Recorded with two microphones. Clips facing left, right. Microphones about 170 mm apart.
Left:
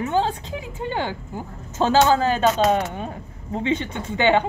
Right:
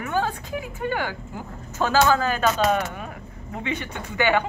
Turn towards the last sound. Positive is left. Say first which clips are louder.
# left 3 dB
turn(degrees=25)  # may be behind; listen again after turning